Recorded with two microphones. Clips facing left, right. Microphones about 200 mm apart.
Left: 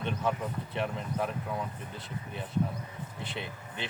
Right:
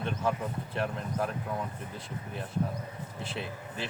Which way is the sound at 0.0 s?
Centre (ahead or behind).